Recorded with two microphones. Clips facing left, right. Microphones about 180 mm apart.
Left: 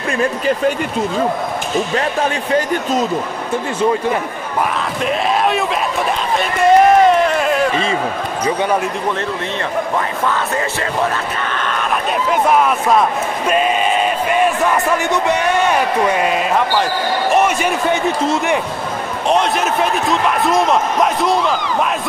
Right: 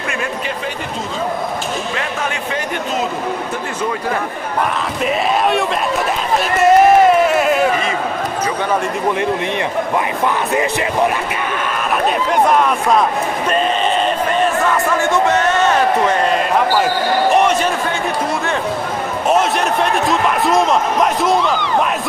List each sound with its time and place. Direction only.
6.3 s run: 5° right (ahead or behind)
10.2 s music: 15° right (ahead or behind)
12.3 s speech: 5° left (ahead or behind)
15.0 s a man's voice: 15° left (ahead or behind)
19.2 s speech: centre (ahead or behind)